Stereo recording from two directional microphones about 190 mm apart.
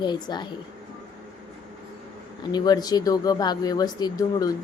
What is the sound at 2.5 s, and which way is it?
Speech, 20° left (ahead or behind).